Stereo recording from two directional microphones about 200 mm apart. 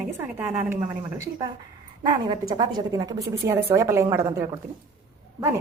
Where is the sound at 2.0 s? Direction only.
20° right (ahead or behind).